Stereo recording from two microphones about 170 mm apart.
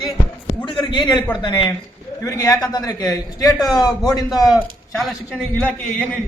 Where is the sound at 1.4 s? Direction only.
25° left (ahead or behind).